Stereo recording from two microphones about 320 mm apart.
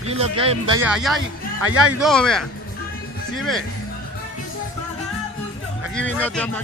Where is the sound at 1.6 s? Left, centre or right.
Right.